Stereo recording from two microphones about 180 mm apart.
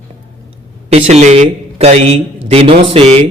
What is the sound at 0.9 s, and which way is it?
Speech, 35° right (ahead or behind).